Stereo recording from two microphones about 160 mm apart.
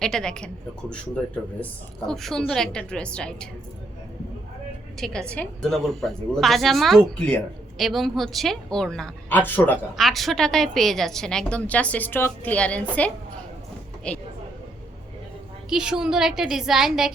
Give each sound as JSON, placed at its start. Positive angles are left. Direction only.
{"t": 0.0, "sound": "speech", "side_deg": 5}
{"t": 2.0, "sound": "speech", "side_deg": 0}
{"t": 4.9, "sound": "a woman's voice", "side_deg": 5}
{"t": 14.1, "sound": "a woman's voice", "side_deg": 5}
{"t": 15.7, "sound": "speech", "side_deg": -5}